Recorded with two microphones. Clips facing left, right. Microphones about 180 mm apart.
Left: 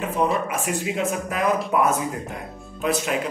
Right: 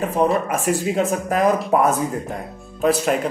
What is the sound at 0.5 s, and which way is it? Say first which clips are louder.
Speech: right 5 dB; 40° right (ahead or behind).